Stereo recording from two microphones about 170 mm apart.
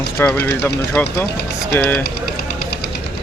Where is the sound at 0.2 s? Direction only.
10° left (ahead or behind).